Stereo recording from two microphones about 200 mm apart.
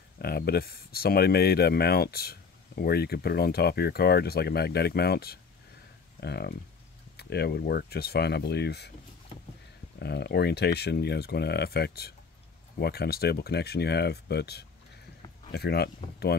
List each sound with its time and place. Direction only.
0.2 s speech: 50° left (ahead or behind)
9.9 s speech: 55° left (ahead or behind)